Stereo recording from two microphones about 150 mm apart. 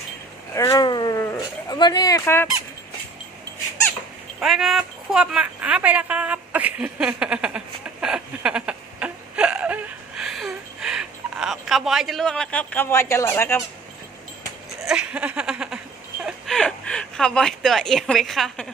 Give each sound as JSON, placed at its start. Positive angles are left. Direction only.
{"t": 0.5, "sound": "speech", "side_deg": 20}
{"t": 4.4, "sound": "speech", "side_deg": -5}
{"t": 8.0, "sound": "a sound", "side_deg": -5}
{"t": 14.8, "sound": "speech", "side_deg": -5}